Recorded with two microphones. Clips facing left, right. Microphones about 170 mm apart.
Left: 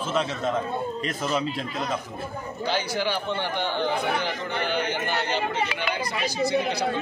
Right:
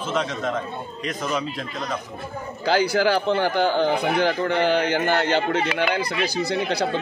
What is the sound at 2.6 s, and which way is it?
A man's voice, 90° right.